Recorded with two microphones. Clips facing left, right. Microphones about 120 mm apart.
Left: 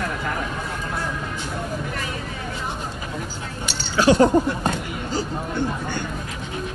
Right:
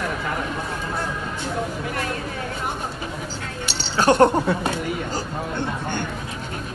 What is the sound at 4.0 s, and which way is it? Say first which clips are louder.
Speech: even; 55° right (ahead or behind).